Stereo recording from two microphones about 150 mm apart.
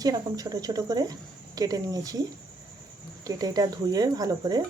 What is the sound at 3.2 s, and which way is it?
Speech, 25° right (ahead or behind).